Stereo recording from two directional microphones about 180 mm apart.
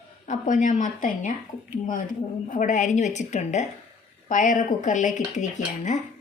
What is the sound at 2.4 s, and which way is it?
A woman's voice, 45° left (ahead or behind).